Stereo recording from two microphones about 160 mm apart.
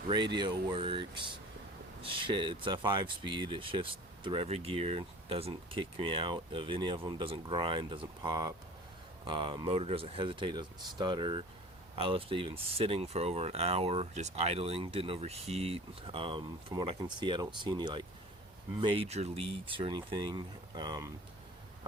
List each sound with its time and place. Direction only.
0.1 s speech: 25° right (ahead or behind)